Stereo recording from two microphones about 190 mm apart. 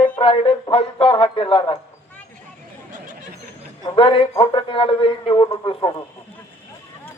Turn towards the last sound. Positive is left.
turn(degrees=25)  # may be behind; listen again after turning